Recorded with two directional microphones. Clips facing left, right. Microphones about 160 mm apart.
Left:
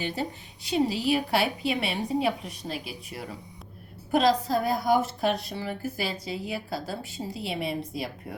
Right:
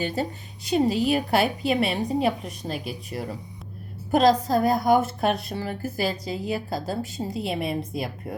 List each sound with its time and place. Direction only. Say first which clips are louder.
0.0 s a woman's voice: right 4 dB; 45° right (ahead or behind)